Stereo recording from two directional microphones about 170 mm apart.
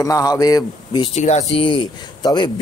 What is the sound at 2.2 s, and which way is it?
Speech, 25° left (ahead or behind).